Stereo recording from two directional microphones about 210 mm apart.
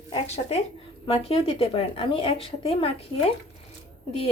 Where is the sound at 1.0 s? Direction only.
25° left (ahead or behind).